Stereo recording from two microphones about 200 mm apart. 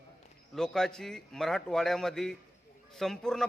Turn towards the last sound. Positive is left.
turn(degrees=0)  # may be behind; listen again after turning